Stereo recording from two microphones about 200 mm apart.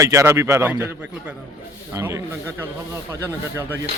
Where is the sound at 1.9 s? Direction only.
15° right (ahead or behind).